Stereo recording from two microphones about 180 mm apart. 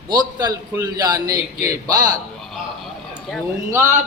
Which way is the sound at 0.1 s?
25° right (ahead or behind).